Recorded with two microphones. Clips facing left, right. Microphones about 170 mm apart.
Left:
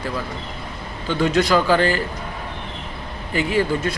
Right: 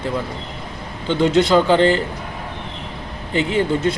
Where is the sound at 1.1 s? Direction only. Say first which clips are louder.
Right 3 dB; 20° right (ahead or behind).